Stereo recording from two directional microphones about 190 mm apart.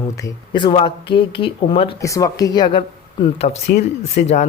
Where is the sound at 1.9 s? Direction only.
15° left (ahead or behind).